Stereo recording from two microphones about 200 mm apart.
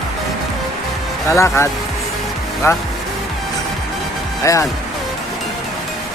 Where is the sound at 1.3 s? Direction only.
15° left (ahead or behind).